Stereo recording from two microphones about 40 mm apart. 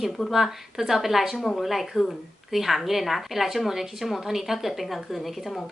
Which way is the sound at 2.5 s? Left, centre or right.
Centre.